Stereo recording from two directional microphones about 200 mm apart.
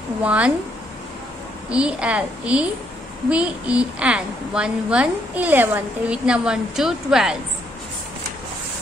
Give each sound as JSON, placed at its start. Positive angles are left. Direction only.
{"t": 0.2, "sound": "a woman's voice", "side_deg": -5}
{"t": 1.7, "sound": "a woman's voice", "side_deg": -5}